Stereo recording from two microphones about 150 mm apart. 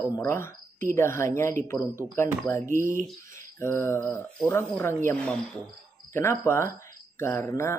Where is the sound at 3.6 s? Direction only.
20° left (ahead or behind).